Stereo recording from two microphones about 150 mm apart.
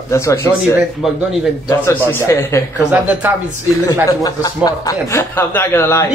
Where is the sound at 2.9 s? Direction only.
10° right (ahead or behind).